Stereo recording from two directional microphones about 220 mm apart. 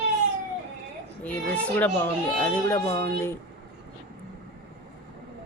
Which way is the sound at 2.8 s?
25° left (ahead or behind).